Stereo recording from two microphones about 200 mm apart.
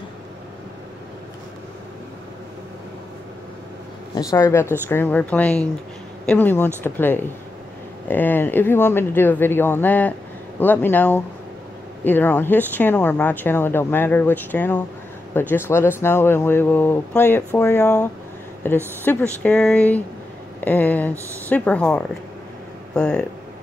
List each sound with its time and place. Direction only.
4.1 s speech: 15° left (ahead or behind)